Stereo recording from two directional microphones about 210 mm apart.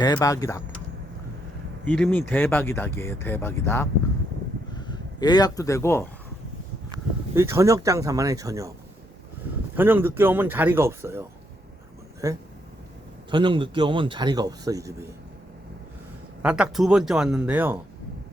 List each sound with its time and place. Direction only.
0.0 s speech: 15° left (ahead or behind)
1.8 s speech: 5° left (ahead or behind)
6.9 s speech: 15° right (ahead or behind)
9.7 s a man's voice: 10° right (ahead or behind)
16.4 s speech: 5° right (ahead or behind)